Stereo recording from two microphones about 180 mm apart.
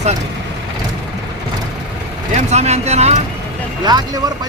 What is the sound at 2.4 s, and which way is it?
Speech, 40° right (ahead or behind).